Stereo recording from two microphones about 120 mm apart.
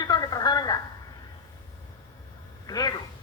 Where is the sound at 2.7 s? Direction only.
30° left (ahead or behind).